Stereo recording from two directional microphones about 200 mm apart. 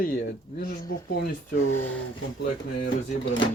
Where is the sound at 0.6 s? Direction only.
45° left (ahead or behind).